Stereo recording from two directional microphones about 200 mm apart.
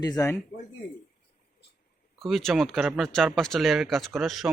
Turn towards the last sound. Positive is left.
turn(degrees=0)  # may be behind; listen again after turning